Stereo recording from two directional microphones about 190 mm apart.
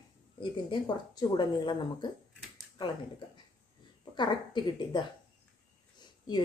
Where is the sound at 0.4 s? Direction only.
25° left (ahead or behind).